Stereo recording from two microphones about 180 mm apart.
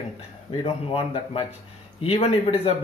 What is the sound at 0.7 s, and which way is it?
Speech, 30° left (ahead or behind).